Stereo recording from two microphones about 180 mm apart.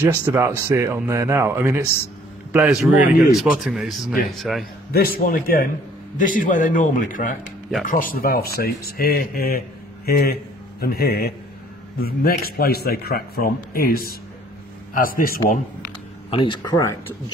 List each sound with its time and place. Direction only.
0.0 s speech: 10° right (ahead or behind)
4.9 s a man's voice: 55° left (ahead or behind)
10.8 s a man's voice: 60° left (ahead or behind)
16.3 s speech: 25° left (ahead or behind)